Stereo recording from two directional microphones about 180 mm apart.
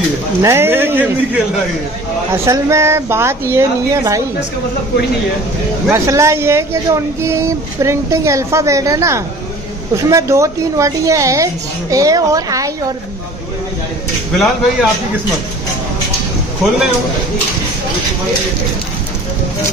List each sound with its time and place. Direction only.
0.4 s speech: 15° right (ahead or behind)
5.9 s speech: 15° right (ahead or behind)
14.3 s speech: centre (ahead or behind)